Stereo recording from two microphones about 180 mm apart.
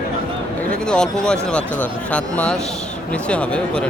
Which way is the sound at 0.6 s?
5° left (ahead or behind).